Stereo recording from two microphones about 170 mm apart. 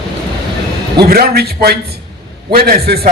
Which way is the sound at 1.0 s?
65° right (ahead or behind).